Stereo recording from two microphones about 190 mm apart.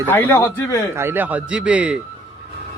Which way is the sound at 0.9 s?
10° right (ahead or behind).